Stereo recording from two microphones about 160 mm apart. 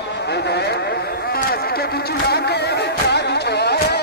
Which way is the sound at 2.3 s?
90° left.